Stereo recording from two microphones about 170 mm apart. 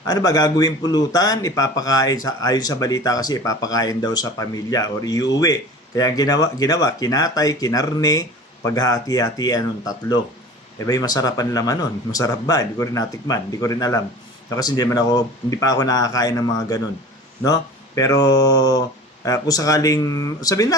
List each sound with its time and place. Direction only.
0.1 s speech: 20° left (ahead or behind)